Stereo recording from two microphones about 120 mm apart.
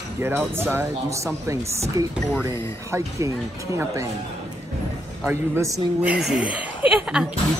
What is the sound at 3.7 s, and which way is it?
Speech, 25° right (ahead or behind).